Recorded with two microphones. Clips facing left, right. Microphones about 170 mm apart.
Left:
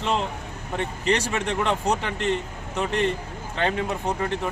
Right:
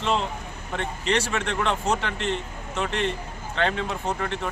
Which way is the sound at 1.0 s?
40° left (ahead or behind).